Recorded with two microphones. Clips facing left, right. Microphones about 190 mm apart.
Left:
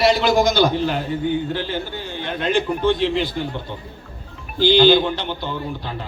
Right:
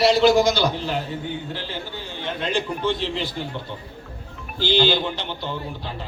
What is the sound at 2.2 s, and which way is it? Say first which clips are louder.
A man's voice: left 4 dB; 55° left (ahead or behind).